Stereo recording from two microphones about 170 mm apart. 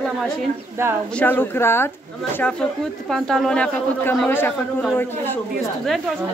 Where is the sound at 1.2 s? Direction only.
10° left (ahead or behind).